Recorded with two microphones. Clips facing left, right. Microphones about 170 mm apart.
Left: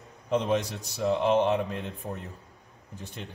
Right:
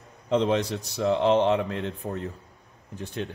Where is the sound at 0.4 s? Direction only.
80° right.